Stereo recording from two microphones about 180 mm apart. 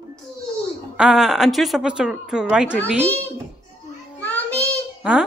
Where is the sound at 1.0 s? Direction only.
5° right (ahead or behind).